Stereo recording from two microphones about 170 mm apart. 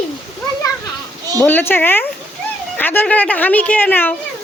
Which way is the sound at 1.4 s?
10° left (ahead or behind).